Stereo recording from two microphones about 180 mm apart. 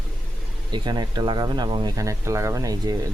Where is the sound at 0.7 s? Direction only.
25° right (ahead or behind).